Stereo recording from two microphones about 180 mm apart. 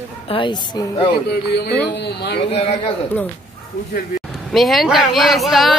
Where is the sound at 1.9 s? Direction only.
70° left (ahead or behind).